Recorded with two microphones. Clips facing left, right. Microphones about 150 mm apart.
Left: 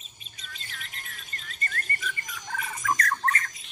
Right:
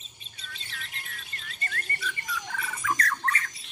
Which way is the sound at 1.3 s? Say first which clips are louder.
Left 2 dB; 40° left (ahead or behind).